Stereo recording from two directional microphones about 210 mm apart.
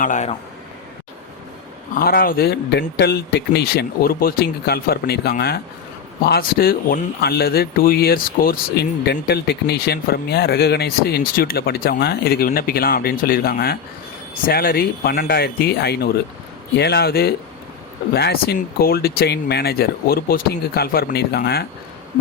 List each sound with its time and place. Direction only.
0.0 s a man's voice: 35° left (ahead or behind)
2.0 s speech: 45° left (ahead or behind)